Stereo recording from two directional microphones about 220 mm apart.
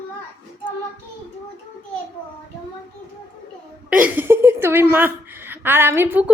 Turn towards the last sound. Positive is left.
turn(degrees=-10)  # may be behind; listen again after turning